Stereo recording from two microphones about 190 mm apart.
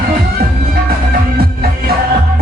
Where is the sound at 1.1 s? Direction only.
50° right (ahead or behind).